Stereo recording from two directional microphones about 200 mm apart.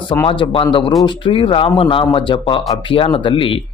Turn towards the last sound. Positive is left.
turn(degrees=25)  # may be behind; listen again after turning